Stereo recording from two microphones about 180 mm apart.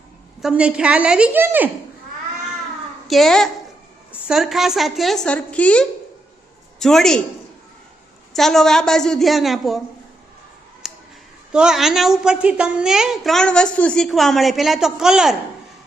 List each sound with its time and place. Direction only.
0.4 s a woman's voice: 5° right (ahead or behind)
3.1 s a woman's voice: centre (ahead or behind)
8.3 s a woman's voice: centre (ahead or behind)
10.8 s a sound: centre (ahead or behind)
11.5 s a woman's voice: 5° right (ahead or behind)